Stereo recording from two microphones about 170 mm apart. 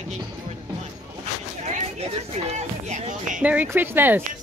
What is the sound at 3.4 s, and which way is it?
Speech, 10° right (ahead or behind).